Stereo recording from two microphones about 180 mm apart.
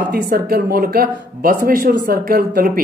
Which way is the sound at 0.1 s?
55° right (ahead or behind).